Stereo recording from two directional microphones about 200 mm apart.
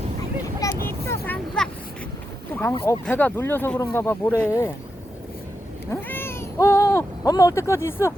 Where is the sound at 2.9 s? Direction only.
10° left (ahead or behind).